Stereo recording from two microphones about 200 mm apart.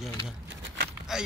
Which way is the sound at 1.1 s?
Centre (ahead or behind).